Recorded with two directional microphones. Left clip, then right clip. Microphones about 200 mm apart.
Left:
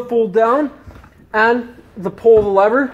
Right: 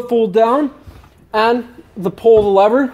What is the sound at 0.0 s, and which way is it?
Speech, 40° right (ahead or behind).